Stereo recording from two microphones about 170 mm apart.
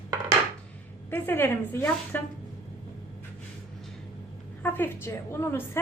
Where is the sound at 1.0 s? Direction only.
10° left (ahead or behind).